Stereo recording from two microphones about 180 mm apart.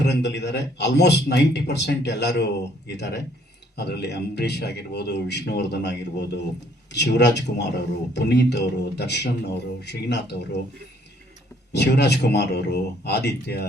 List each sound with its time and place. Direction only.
0.0 s a man's voice: 70° left (ahead or behind)
11.7 s a man's voice: 70° left (ahead or behind)